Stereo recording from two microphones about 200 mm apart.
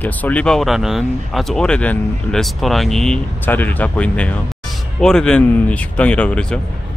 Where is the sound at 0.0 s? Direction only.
10° left (ahead or behind).